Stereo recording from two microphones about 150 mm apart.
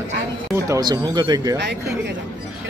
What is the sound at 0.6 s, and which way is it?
Speech, 25° right (ahead or behind).